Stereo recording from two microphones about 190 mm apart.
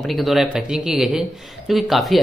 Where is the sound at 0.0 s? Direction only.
Centre (ahead or behind).